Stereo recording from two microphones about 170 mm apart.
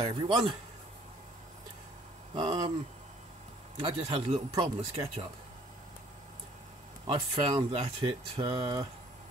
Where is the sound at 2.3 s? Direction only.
30° right (ahead or behind).